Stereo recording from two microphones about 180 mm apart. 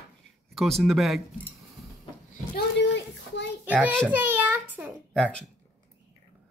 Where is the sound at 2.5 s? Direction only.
75° left (ahead or behind).